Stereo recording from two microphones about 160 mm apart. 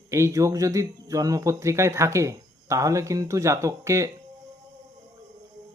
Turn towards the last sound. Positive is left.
turn(degrees=-20)  # may be behind; listen again after turning